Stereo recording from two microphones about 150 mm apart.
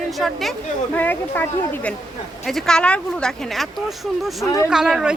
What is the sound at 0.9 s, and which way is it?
A woman's voice, 15° left (ahead or behind).